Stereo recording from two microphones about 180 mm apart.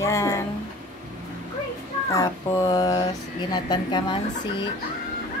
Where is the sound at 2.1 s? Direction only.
20° left (ahead or behind).